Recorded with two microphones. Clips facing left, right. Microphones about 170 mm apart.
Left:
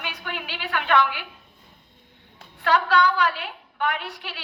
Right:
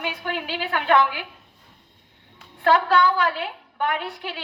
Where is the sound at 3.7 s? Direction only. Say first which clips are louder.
Right 1 dB; 50° right (ahead or behind).